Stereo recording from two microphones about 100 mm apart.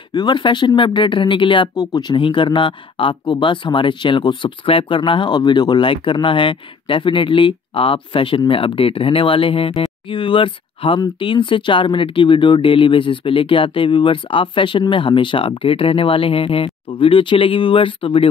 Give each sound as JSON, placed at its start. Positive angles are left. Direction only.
{"t": 0.1, "sound": "speech", "side_deg": 50}